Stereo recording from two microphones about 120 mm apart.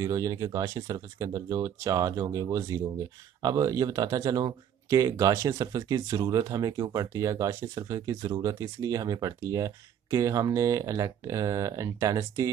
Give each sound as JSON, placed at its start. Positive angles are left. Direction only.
{"t": 0.0, "sound": "speech", "side_deg": -30}